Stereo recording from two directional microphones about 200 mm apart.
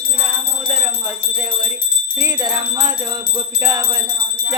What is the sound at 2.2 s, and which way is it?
Jingle bell, 15° right (ahead or behind).